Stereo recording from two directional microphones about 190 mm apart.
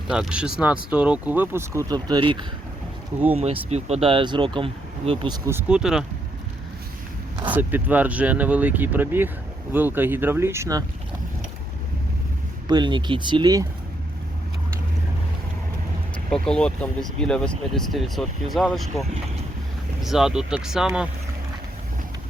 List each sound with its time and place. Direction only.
0.1 s speech: 5° right (ahead or behind); by 5.4 s 30° right (ahead or behind)
5.5 s speech: 10° right (ahead or behind)
7.5 s speech: 10° right (ahead or behind)
12.6 s speech: 25° right (ahead or behind)
16.3 s speech: 5° left (ahead or behind)
20.0 s speech: centre (ahead or behind)